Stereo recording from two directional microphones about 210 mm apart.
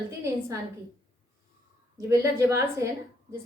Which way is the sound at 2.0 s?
15° right (ahead or behind).